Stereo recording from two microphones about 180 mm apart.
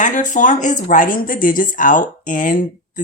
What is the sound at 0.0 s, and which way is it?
Speech, 45° left (ahead or behind).